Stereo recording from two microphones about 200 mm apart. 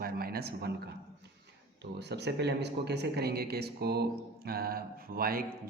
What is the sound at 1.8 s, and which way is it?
Speech, 55° right (ahead or behind).